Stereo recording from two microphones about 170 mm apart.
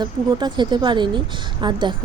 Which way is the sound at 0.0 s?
25° right (ahead or behind).